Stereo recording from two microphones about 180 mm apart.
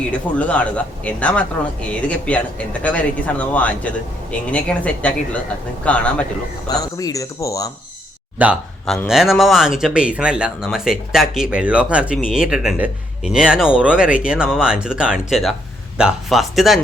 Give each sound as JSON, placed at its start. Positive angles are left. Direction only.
{"t": 0.1, "sound": "speech", "side_deg": 5}
{"t": 6.7, "sound": "speech", "side_deg": 20}
{"t": 8.4, "sound": "a man's voice", "side_deg": -10}